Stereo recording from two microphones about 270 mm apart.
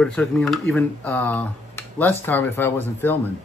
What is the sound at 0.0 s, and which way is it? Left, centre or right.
Speech, centre.